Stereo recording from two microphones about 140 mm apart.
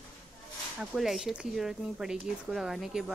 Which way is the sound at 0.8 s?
Centre (ahead or behind).